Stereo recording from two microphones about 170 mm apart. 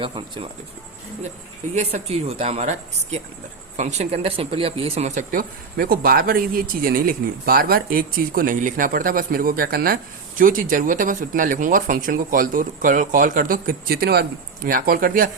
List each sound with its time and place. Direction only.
0.0 s speech: 30° right (ahead or behind)
1.7 s speech: 40° right (ahead or behind); by 15.3 s 55° right (ahead or behind)